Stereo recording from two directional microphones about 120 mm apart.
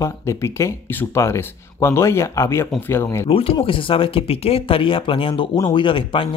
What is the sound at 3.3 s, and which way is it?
Speech, 50° left (ahead or behind).